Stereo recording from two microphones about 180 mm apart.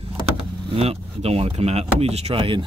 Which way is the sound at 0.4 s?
30° right (ahead or behind).